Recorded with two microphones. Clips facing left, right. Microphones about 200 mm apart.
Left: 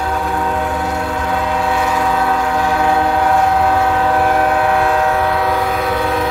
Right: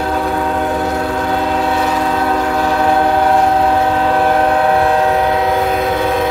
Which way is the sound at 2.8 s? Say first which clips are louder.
Right 3 dB; 35° right (ahead or behind).